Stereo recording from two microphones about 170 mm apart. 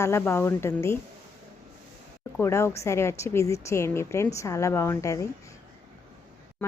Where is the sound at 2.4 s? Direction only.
15° left (ahead or behind).